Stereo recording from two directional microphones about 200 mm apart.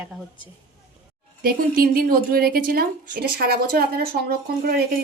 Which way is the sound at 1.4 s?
45° right (ahead or behind).